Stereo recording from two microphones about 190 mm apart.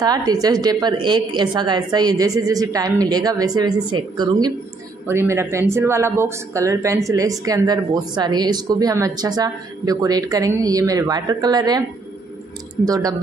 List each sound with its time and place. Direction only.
0.0 s speech: 20° right (ahead or behind)
12.8 s speech: 20° right (ahead or behind)